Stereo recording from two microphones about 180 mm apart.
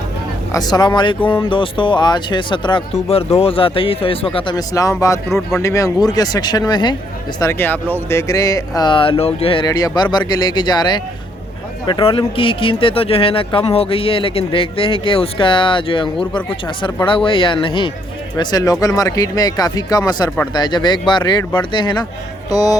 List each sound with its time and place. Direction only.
0.5 s speech: 20° left (ahead or behind)
5.3 s speech: centre (ahead or behind)
5.6 s speech: 20° left (ahead or behind)
7.3 s speech: 15° left (ahead or behind)